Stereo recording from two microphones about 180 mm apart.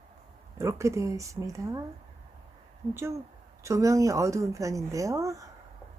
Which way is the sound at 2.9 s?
15° right (ahead or behind).